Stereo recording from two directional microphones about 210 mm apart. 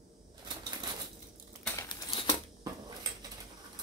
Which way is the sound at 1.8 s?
20° left (ahead or behind).